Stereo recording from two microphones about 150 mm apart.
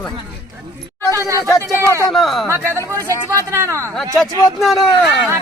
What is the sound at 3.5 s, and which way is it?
Speech, 15° right (ahead or behind).